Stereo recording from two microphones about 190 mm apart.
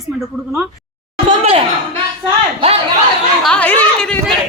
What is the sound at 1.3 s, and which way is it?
Speech, 30° right (ahead or behind).